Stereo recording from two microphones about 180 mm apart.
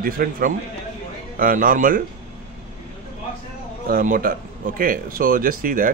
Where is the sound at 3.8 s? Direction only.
50° right (ahead or behind).